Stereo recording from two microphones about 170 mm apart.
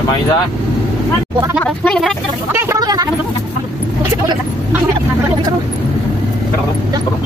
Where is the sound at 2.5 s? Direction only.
20° right (ahead or behind).